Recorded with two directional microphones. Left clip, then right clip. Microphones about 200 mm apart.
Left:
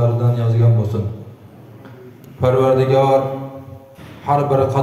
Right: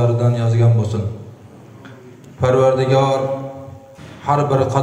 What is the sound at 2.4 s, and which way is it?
Speech, 15° right (ahead or behind).